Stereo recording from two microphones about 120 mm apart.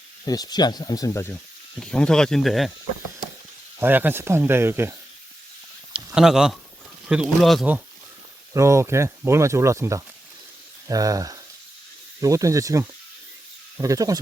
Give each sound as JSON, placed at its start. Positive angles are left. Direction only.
{"t": 0.3, "sound": "speech", "side_deg": 35}
{"t": 1.8, "sound": "speech", "side_deg": 5}
{"t": 3.8, "sound": "speech", "side_deg": -15}
{"t": 5.9, "sound": "speech", "side_deg": -5}
{"t": 8.5, "sound": "speech", "side_deg": -25}